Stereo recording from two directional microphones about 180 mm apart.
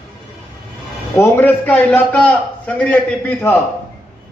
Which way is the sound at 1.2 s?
10° left (ahead or behind).